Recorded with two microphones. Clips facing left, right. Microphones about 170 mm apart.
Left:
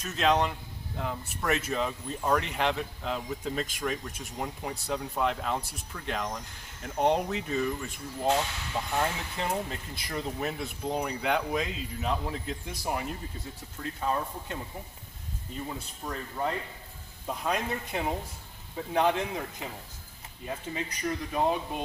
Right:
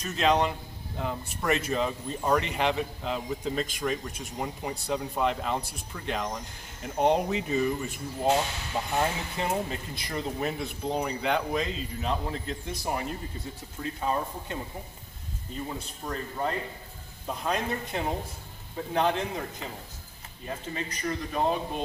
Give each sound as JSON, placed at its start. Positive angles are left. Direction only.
{"t": 0.0, "sound": "speech", "side_deg": 0}
{"t": 16.1, "sound": "speech", "side_deg": 5}